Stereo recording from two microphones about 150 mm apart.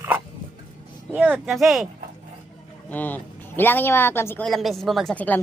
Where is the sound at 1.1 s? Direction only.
5° right (ahead or behind).